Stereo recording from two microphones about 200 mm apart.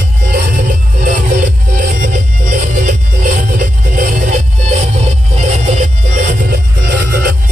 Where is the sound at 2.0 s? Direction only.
40° right (ahead or behind).